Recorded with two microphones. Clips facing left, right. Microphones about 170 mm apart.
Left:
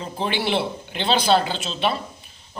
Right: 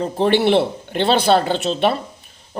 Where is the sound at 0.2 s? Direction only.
60° right (ahead or behind).